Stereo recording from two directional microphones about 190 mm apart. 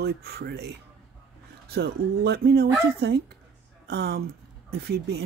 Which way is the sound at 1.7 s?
60° right (ahead or behind).